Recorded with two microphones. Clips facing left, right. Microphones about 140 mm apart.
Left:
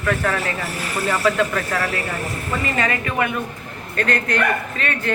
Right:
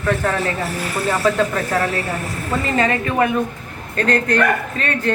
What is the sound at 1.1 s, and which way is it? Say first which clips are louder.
Speech: right 1 dB; 30° right (ahead or behind).